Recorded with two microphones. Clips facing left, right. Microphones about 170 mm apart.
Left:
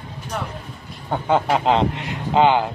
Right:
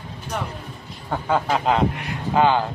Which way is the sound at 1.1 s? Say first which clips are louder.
Left 3 dB; 20° left (ahead or behind).